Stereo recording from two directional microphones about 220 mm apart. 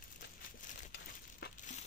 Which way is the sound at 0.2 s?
40° left (ahead or behind).